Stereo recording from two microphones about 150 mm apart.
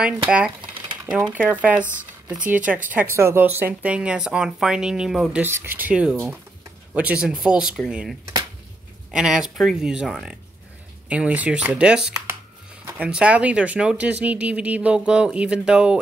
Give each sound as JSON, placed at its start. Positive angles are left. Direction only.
{"t": 0.6, "sound": "a sound", "side_deg": -35}
{"t": 1.1, "sound": "speech", "side_deg": -10}
{"t": 5.4, "sound": "speech", "side_deg": -15}